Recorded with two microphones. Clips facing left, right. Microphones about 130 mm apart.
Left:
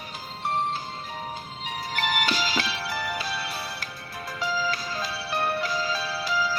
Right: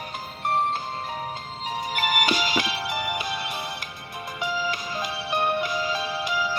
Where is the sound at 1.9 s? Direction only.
10° right (ahead or behind).